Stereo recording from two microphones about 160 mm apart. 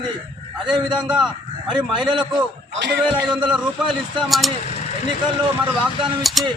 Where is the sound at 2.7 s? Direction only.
90° right.